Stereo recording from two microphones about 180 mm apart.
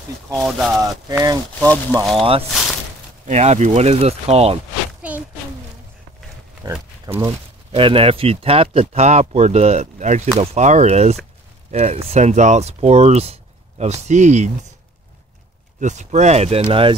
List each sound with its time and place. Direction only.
0.3 s speech: centre (ahead or behind)
0.7 s speech: 20° right (ahead or behind); by 4.6 s 35° right (ahead or behind)
6.7 s speech: 15° right (ahead or behind)
7.7 s speech: 30° right (ahead or behind)
15.8 s speech: 40° right (ahead or behind)